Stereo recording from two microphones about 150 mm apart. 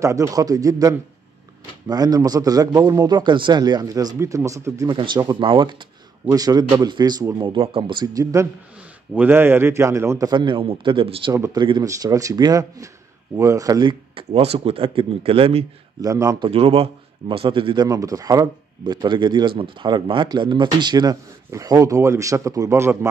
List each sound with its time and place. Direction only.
0.0 s speech: 20° right (ahead or behind)
4.8 s speech: 30° right (ahead or behind)
16.0 s speech: 20° right (ahead or behind)
16.4 s speech: 40° right (ahead or behind)
17.8 s speech: 25° right (ahead or behind)